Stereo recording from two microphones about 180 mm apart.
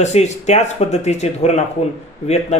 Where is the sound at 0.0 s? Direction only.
40° left (ahead or behind).